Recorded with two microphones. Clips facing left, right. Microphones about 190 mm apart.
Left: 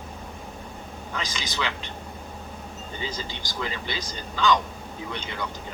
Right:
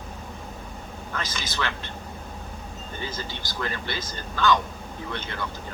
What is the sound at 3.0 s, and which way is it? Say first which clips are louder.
Speech: even; 15° left (ahead or behind).